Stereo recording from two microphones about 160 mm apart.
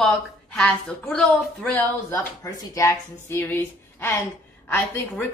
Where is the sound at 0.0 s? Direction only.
5° left (ahead or behind).